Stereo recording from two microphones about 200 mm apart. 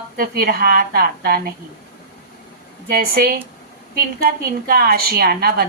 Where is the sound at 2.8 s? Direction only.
50° right (ahead or behind).